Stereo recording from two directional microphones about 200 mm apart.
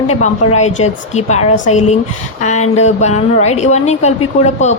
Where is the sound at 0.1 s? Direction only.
35° left (ahead or behind).